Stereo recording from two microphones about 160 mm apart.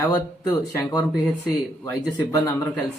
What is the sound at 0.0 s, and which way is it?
Speech, 20° left (ahead or behind).